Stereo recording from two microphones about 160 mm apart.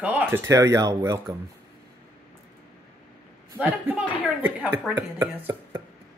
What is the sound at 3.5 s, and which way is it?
A woman's voice, 10° right (ahead or behind).